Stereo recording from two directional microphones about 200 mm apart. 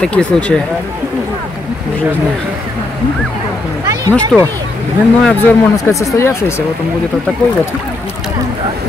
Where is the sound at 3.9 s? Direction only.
15° right (ahead or behind).